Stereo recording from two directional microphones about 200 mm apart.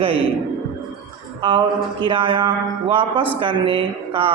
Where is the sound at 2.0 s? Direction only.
25° right (ahead or behind).